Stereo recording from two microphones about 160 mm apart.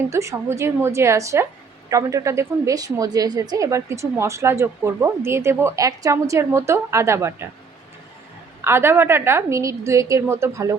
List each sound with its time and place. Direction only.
0.1 s a woman's voice: 20° right (ahead or behind)
8.6 s a woman's voice: 15° right (ahead or behind)